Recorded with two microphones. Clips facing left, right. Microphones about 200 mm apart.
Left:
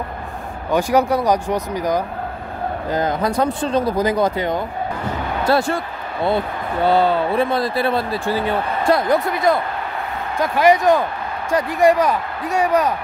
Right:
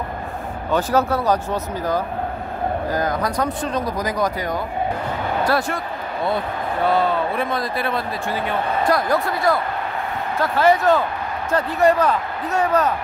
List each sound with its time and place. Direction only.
0.7 s speech: 15° left (ahead or behind)
6.9 s speech: 30° left (ahead or behind); by 12.9 s 10° left (ahead or behind)